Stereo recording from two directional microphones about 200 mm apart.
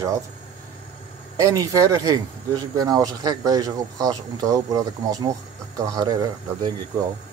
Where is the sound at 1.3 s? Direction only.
15° right (ahead or behind).